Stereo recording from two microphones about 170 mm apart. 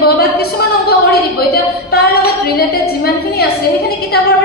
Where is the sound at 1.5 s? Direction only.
70° left (ahead or behind).